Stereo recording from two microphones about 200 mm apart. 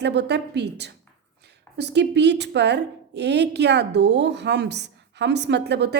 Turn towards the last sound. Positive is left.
turn(degrees=-55)  # may be behind; listen again after turning